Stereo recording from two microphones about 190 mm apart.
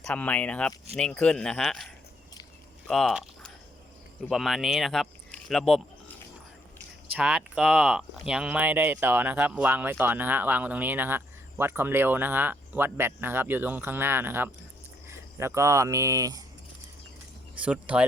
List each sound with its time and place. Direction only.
0.0 s speech: 5° left (ahead or behind)
2.8 s a sound: centre (ahead or behind)
4.3 s speech: centre (ahead or behind)
7.2 s speech: 5° right (ahead or behind)
17.6 s speech: 5° right (ahead or behind)